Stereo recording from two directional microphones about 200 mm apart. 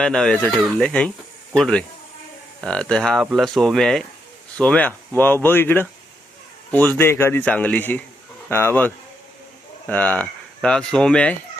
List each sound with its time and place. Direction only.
0.0 s speech: 5° left (ahead or behind)
9.9 s speech: 5° left (ahead or behind)